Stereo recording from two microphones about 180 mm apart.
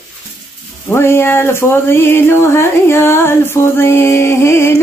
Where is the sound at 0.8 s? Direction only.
15° left (ahead or behind).